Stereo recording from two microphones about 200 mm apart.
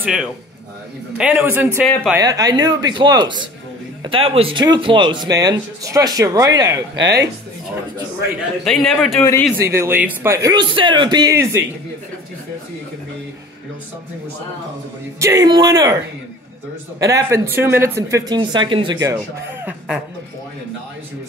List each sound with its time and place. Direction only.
0.0 s a man's voice: 5° right (ahead or behind)
8.6 s a man's voice: centre (ahead or behind)
9.2 s a man's voice: 15° left (ahead or behind)
9.6 s speech: 15° right (ahead or behind)
15.1 s speech: 15° right (ahead or behind)
17.0 s speech: 15° right (ahead or behind)